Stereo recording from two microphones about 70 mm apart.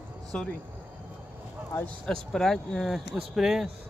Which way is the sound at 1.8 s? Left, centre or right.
Centre.